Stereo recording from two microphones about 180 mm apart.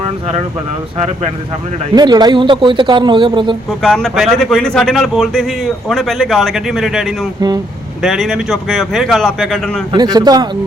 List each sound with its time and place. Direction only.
2.0 s speech: 25° right (ahead or behind)
3.8 s a man's voice: centre (ahead or behind)
9.9 s speech: 20° right (ahead or behind)